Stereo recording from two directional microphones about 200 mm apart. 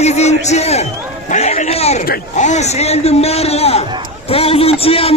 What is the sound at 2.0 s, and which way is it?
A man's voice, 45° left (ahead or behind).